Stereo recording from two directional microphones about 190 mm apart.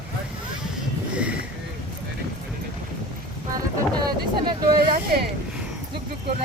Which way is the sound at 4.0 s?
20° right (ahead or behind).